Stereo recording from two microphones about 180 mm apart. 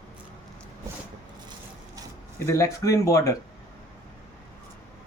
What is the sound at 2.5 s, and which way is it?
Speech, 15° left (ahead or behind).